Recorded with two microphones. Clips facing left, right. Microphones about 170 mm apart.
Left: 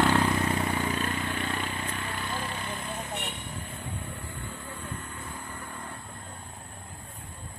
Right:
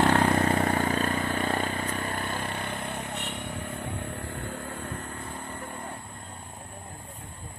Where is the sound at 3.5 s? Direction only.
65° right (ahead or behind); by 5.8 s 30° right (ahead or behind).